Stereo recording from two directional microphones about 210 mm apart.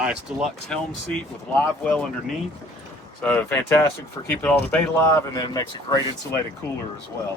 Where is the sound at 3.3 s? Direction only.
10° left (ahead or behind).